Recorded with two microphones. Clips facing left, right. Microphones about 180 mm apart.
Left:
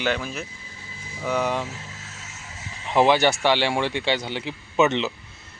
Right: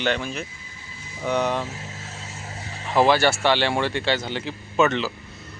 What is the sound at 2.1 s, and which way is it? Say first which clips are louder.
Vehicle: right 6 dB; 35° right (ahead or behind).